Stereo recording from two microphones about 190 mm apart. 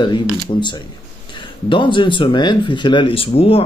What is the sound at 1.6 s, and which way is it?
A man's voice, 25° left (ahead or behind).